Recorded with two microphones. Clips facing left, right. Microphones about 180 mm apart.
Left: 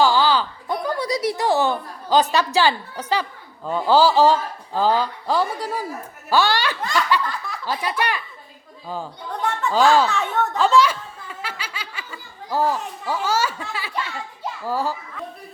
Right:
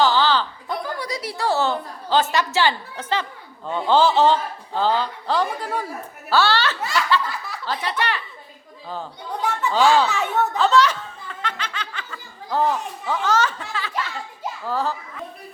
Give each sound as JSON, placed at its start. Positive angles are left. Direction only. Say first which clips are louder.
{"t": 0.0, "sound": "a sound", "louder": "left 1 dB", "side_deg": 10}
{"t": 1.2, "sound": "a man's voice", "louder": "left 1 dB", "side_deg": 20}
{"t": 7.3, "sound": "speech", "louder": "left 1 dB", "side_deg": -5}
{"t": 7.6, "sound": "a man's voice", "louder": "left 1 dB", "side_deg": 10}
{"t": 9.4, "sound": "speech", "louder": "left 1 dB", "side_deg": 0}
{"t": 10.6, "sound": "snicker", "louder": "left 1 dB", "side_deg": 10}
{"t": 14.7, "sound": "a man's voice", "louder": "even", "side_deg": 10}